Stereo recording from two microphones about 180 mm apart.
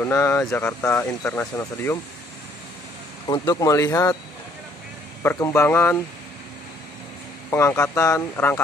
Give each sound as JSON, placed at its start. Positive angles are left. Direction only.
{"t": 0.1, "sound": "speech", "side_deg": 15}
{"t": 3.3, "sound": "speech", "side_deg": 20}
{"t": 5.2, "sound": "speech", "side_deg": 10}
{"t": 7.5, "sound": "speech", "side_deg": 15}